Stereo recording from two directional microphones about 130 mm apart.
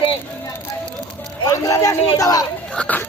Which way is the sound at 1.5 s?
25° left (ahead or behind).